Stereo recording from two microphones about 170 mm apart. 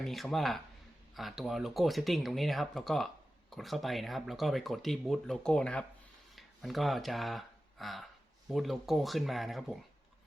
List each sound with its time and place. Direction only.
0.0 s speech: centre (ahead or behind)